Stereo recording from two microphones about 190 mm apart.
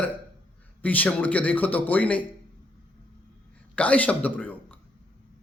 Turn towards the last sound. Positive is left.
turn(degrees=10)  # may be behind; listen again after turning